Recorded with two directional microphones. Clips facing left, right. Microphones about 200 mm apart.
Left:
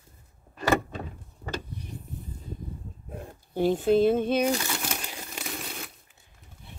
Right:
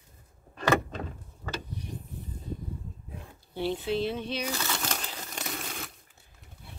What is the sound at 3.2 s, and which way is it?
Speech, 45° left (ahead or behind).